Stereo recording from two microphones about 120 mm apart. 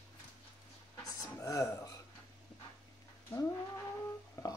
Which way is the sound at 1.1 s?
30° left (ahead or behind).